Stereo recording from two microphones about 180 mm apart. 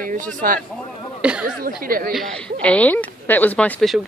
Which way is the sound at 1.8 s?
55° right (ahead or behind).